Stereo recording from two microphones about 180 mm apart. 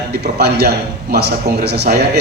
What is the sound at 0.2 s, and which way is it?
A man's voice, 65° right (ahead or behind).